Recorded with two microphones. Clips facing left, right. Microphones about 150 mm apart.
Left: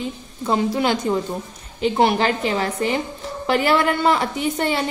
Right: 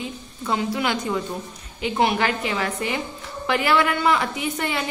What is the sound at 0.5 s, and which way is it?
A woman's voice, 35° left (ahead or behind).